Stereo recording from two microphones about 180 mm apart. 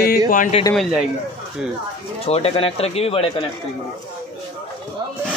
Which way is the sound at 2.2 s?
35° left (ahead or behind).